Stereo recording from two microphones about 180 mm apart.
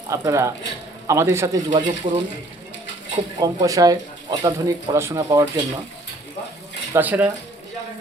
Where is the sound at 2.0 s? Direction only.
40° right (ahead or behind).